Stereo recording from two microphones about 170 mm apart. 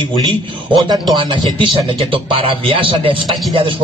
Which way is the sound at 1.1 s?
30° right (ahead or behind).